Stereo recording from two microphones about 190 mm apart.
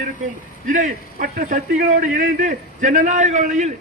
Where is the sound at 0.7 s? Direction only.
40° right (ahead or behind).